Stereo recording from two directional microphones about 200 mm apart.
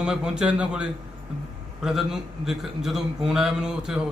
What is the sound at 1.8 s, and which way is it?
A man's voice, centre (ahead or behind).